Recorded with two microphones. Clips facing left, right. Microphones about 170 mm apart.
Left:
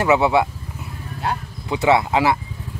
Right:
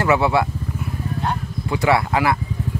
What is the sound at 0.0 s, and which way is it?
Speech, 20° left (ahead or behind).